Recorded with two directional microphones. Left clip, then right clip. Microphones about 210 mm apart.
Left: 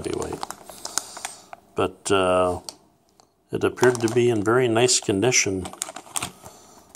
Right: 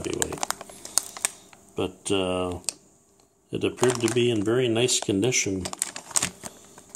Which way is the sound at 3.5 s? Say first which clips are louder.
Left 4 dB; 10° left (ahead or behind).